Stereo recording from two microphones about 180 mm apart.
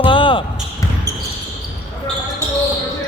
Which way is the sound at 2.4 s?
15° right (ahead or behind).